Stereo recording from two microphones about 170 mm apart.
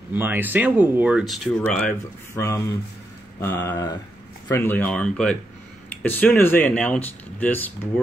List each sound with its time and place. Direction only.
0.1 s speech: 10° right (ahead or behind); by 2.4 s 5° left (ahead or behind)
2.4 s speech: 15° left (ahead or behind)